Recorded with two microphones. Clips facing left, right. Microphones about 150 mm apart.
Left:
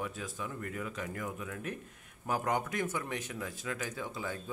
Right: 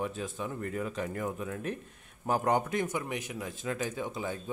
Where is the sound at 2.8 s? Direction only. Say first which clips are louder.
Right 2 dB; 15° right (ahead or behind).